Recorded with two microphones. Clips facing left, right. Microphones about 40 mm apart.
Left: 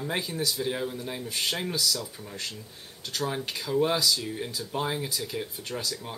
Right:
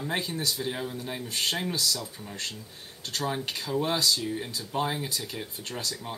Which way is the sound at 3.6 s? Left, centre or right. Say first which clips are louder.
Left 4 dB; centre.